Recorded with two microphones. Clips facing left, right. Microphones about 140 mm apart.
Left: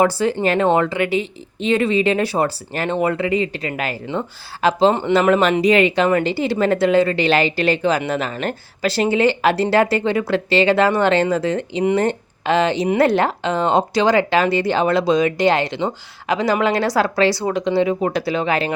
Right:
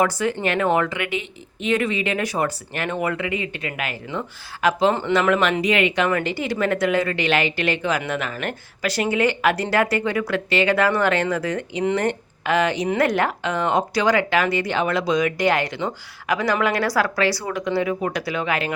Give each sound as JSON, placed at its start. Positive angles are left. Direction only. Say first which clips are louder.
{"t": 0.0, "sound": "speech", "louder": "left 4 dB", "side_deg": 30}
{"t": 5.3, "sound": "a woman's voice", "louder": "left 5 dB", "side_deg": 35}